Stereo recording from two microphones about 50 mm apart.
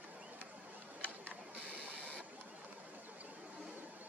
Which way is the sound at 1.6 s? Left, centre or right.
Right.